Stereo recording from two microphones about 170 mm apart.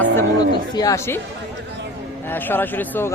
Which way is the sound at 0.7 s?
20° left (ahead or behind).